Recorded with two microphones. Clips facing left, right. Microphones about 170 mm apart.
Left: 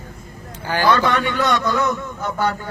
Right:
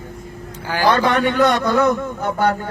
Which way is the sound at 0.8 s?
50° right (ahead or behind).